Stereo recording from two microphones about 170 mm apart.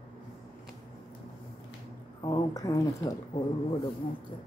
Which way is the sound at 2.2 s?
20° left (ahead or behind).